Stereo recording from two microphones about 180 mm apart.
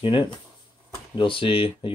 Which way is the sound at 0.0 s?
25° left (ahead or behind).